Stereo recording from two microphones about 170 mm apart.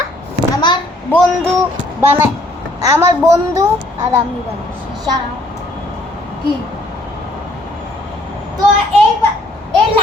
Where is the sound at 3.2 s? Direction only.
20° right (ahead or behind).